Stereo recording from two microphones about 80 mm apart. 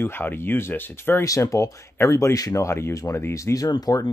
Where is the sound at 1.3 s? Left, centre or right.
Left.